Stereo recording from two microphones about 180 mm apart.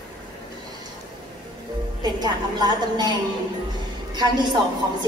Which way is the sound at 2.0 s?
25° right (ahead or behind).